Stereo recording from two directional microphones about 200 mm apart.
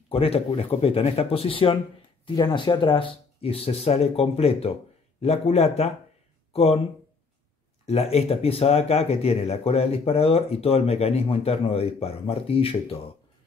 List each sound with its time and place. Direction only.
0.1 s speech: 30° left (ahead or behind)
7.8 s speech: 35° left (ahead or behind)